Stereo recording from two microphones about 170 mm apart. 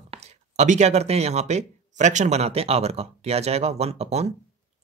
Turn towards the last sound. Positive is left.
turn(degrees=-40)  # may be behind; listen again after turning